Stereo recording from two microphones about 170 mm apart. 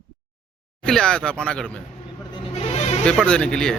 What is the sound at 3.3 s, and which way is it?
Speech, 5° left (ahead or behind).